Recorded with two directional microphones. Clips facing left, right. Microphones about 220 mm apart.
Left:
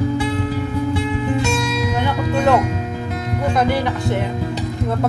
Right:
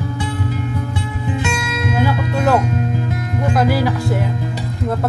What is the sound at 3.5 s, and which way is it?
Speech, 5° right (ahead or behind).